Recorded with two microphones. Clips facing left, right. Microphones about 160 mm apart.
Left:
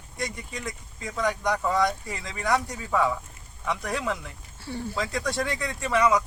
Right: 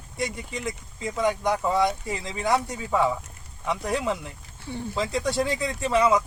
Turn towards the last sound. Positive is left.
turn(degrees=-25)  # may be behind; listen again after turning